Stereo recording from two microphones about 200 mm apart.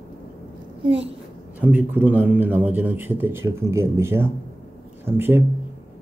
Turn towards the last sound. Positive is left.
turn(degrees=-10)  # may be behind; listen again after turning